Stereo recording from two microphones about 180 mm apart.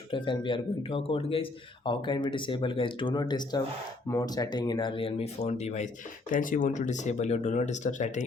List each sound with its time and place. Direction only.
0.1 s speech: 25° left (ahead or behind); by 8.2 s 45° left (ahead or behind)